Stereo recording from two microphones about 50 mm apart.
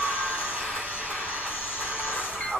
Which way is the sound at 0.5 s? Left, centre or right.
Right.